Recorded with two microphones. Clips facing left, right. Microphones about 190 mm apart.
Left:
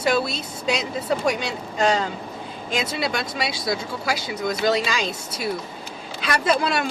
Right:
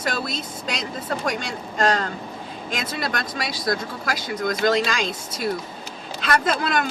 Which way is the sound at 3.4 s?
5° left (ahead or behind).